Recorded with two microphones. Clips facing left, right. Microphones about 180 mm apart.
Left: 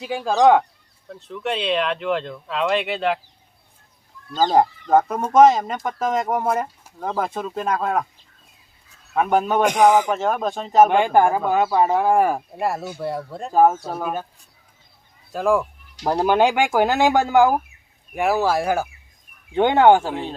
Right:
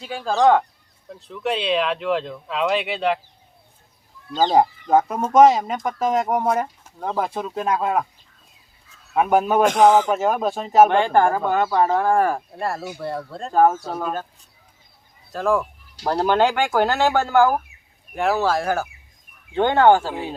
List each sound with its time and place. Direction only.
0.0 s speech: 10° left (ahead or behind)
1.0 s speech: centre (ahead or behind)
4.4 s speech: 5° right (ahead or behind)
9.1 s speech: 5° right (ahead or behind)
9.6 s speech: 15° left (ahead or behind)
10.1 s speech: 5° right (ahead or behind)
10.8 s speech: 10° left (ahead or behind)
15.3 s speech: 10° left (ahead or behind)